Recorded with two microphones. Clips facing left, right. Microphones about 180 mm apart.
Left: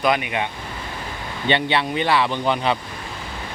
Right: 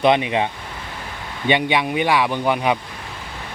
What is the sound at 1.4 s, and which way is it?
Speech, 10° right (ahead or behind).